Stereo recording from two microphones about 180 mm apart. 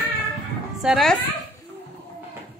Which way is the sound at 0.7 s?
Centre (ahead or behind).